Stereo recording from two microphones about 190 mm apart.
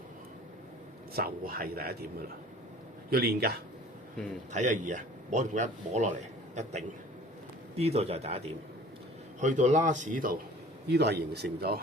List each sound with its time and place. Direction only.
1.1 s speech: 50° right (ahead or behind)
3.1 s a man's voice: 55° right (ahead or behind)
4.5 s a man's voice: 40° right (ahead or behind)
7.8 s a man's voice: 30° right (ahead or behind)
10.8 s a man's voice: 60° right (ahead or behind)